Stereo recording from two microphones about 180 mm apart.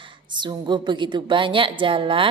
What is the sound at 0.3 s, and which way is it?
A woman's voice, 25° right (ahead or behind).